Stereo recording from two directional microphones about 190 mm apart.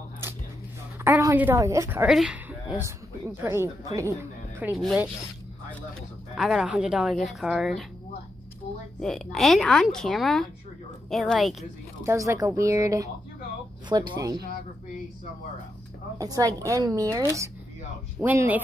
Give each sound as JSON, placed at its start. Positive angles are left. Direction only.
{"t": 1.0, "sound": "a woman's voice", "side_deg": -10}
{"t": 3.4, "sound": "a woman's voice", "side_deg": -15}
{"t": 6.3, "sound": "speech", "side_deg": 0}
{"t": 9.0, "sound": "speech", "side_deg": 0}
{"t": 12.0, "sound": "a woman's voice", "side_deg": -15}
{"t": 16.2, "sound": "a woman's voice", "side_deg": -20}